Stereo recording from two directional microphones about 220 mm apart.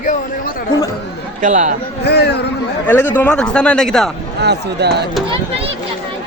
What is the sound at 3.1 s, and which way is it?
Speech, 5° left (ahead or behind).